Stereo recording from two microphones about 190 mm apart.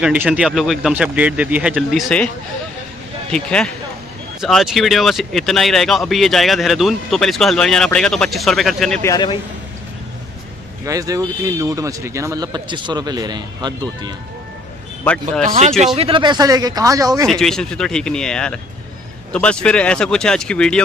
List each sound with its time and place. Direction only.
0.0 s speech: 5° right (ahead or behind)
3.3 s speech: 5° left (ahead or behind)
9.0 s a man's voice: 20° left (ahead or behind)
10.9 s speech: 20° right (ahead or behind)
15.4 s speech: 40° right (ahead or behind)
16.0 s speech: 25° right (ahead or behind)
17.3 s speech: centre (ahead or behind)